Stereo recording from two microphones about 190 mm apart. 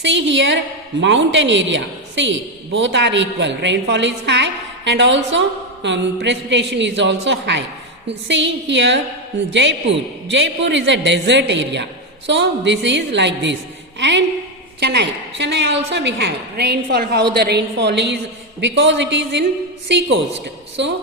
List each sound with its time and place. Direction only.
0.0 s a woman's voice: 70° right (ahead or behind)
18.6 s a woman's voice: 75° right (ahead or behind)